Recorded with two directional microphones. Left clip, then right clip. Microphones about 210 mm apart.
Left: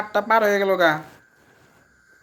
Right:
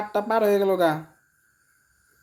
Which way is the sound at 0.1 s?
10° right (ahead or behind).